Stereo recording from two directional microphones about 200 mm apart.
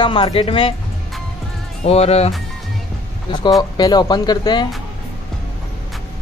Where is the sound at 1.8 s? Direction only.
30° left (ahead or behind).